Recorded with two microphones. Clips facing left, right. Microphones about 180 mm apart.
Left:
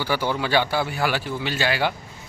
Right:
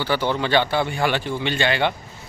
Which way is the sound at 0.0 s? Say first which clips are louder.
Right 2 dB; 10° left (ahead or behind).